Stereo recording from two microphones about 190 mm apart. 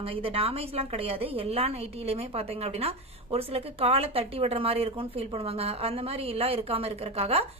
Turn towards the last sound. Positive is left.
turn(degrees=-30)  # may be behind; listen again after turning